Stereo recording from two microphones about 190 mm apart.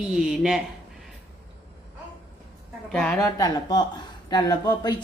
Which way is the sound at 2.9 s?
5° left (ahead or behind).